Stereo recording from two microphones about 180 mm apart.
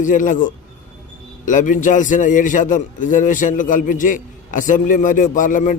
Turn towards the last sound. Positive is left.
turn(degrees=45)  # may be behind; listen again after turning